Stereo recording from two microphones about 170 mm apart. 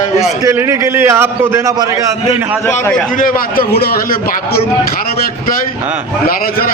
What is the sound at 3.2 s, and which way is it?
A man's voice, 65° left (ahead or behind).